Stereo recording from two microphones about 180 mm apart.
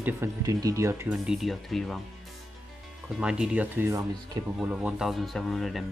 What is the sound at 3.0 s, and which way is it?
Speech, 5° right (ahead or behind).